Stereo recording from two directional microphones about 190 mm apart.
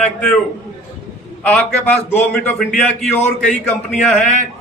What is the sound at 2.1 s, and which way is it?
A man's voice, 10° left (ahead or behind).